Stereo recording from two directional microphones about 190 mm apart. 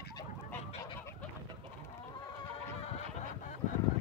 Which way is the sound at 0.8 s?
15° left (ahead or behind).